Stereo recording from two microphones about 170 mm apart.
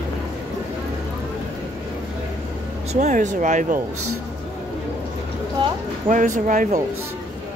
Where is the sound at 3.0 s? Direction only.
45° right (ahead or behind).